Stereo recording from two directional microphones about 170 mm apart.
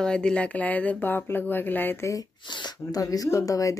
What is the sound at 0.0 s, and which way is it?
Speech, 5° left (ahead or behind).